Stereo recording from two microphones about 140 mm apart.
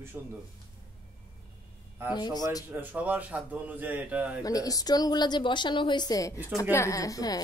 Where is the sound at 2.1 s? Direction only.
30° left (ahead or behind).